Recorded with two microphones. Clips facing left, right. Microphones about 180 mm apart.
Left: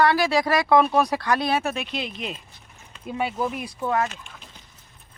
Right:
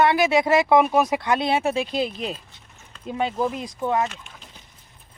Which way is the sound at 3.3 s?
15° right (ahead or behind).